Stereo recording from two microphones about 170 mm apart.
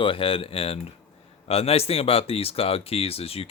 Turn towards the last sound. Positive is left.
turn(degrees=35)  # may be behind; listen again after turning